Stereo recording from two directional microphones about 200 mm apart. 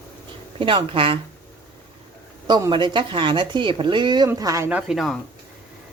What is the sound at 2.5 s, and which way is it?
A woman's voice, 20° right (ahead or behind).